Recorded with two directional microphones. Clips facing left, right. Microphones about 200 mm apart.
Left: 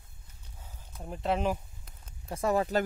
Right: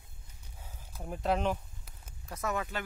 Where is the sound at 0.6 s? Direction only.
10° right (ahead or behind).